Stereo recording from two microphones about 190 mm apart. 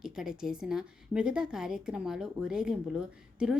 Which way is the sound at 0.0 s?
5° right (ahead or behind).